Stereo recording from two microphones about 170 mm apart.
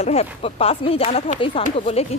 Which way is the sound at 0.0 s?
35° left (ahead or behind).